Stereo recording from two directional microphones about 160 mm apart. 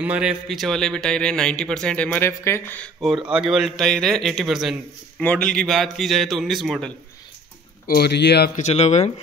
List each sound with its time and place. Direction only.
0.0 s a man's voice: 5° right (ahead or behind); by 2.9 s 15° left (ahead or behind)
3.3 s a man's voice: 5° right (ahead or behind)
7.8 s speech: 75° left (ahead or behind)
8.5 s speech: 45° left (ahead or behind)